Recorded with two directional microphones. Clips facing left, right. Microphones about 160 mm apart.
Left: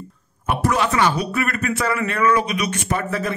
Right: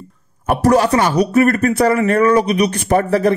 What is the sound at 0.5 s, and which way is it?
Speech, 40° right (ahead or behind).